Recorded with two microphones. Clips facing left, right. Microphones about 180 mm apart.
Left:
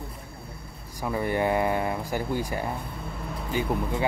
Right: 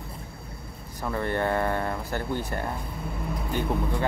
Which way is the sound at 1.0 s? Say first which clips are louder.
Left 1 dB; 10° left (ahead or behind).